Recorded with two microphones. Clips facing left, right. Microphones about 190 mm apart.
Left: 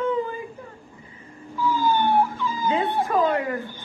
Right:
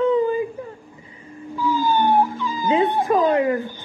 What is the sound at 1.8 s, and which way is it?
Cat, 40° right (ahead or behind).